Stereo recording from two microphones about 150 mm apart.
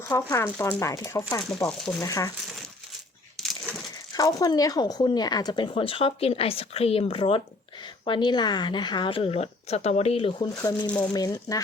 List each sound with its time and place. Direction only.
0.0 s speech: 20° left (ahead or behind)
1.4 s speech: 5° left (ahead or behind)
2.0 s speech: 25° left (ahead or behind)
3.4 s a sound: centre (ahead or behind)
4.1 s speech: 25° left (ahead or behind)
10.5 s speech: 25° left (ahead or behind)